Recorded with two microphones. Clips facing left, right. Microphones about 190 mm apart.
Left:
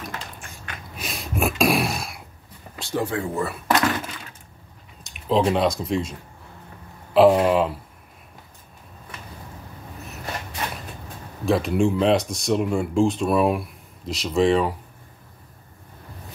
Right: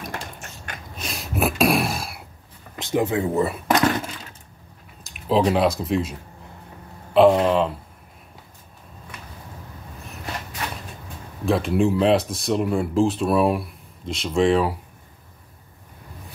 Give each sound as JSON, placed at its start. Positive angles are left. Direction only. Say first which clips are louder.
{"t": 0.9, "sound": "a sound", "louder": "right 1 dB", "side_deg": 0}
{"t": 2.8, "sound": "speech", "louder": "right 4 dB", "side_deg": -20}
{"t": 5.0, "sound": "speech", "louder": "right 1 dB", "side_deg": 0}
{"t": 7.2, "sound": "speech", "louder": "even", "side_deg": 5}
{"t": 11.4, "sound": "speech", "louder": "even", "side_deg": 0}